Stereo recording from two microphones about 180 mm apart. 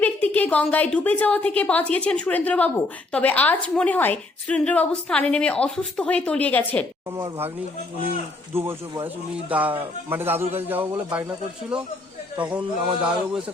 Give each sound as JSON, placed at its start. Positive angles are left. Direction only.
{"t": 0.0, "sound": "a woman's voice", "side_deg": 10}
{"t": 7.1, "sound": "speech", "side_deg": -25}
{"t": 8.5, "sound": "speech", "side_deg": -15}
{"t": 12.4, "sound": "speech", "side_deg": -5}